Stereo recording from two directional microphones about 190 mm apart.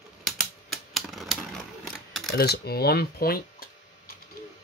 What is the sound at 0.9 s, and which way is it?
Typewriter, centre (ahead or behind).